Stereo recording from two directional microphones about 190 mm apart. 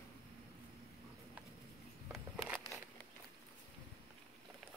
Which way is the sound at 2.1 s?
Centre (ahead or behind).